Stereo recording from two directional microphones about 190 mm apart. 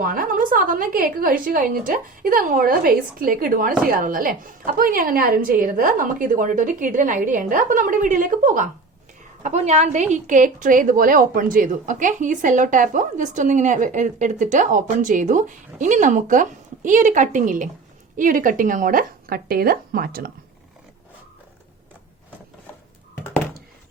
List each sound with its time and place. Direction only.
0.0 s a woman's voice: 45° right (ahead or behind)